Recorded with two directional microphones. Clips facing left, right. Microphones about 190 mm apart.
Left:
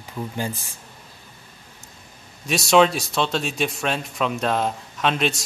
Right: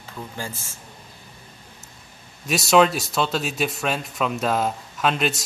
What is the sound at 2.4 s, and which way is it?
Speech, centre (ahead or behind).